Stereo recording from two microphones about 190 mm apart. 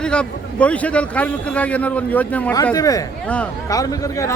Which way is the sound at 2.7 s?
20° left (ahead or behind).